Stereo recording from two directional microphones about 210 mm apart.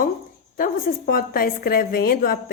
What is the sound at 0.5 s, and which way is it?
A woman's voice, 45° left (ahead or behind).